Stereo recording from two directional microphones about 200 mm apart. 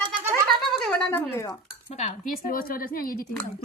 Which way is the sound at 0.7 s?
Centre (ahead or behind).